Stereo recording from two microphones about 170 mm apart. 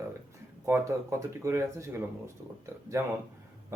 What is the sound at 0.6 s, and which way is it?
Speech, 15° right (ahead or behind).